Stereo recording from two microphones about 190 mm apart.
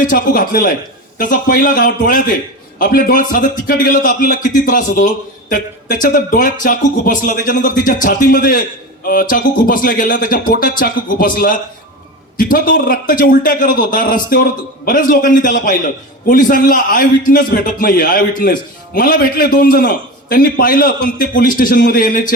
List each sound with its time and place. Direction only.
0.0 s a man's voice: 50° left (ahead or behind)